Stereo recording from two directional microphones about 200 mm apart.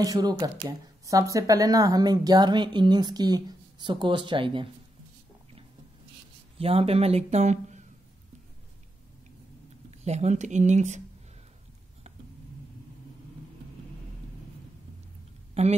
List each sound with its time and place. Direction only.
0.0 s speech: 20° right (ahead or behind)
6.6 s speech: 30° right (ahead or behind)
9.8 s speech: 35° right (ahead or behind)
15.6 s a woman's voice: 30° right (ahead or behind)